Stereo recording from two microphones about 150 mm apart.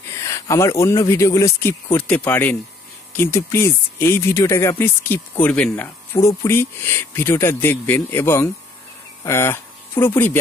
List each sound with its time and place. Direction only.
0.1 s speech: 20° left (ahead or behind)